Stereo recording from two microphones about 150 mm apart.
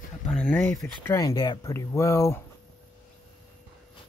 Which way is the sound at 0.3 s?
5° left (ahead or behind).